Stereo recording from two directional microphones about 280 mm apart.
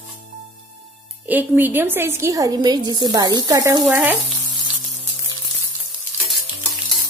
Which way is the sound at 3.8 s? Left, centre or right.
Centre.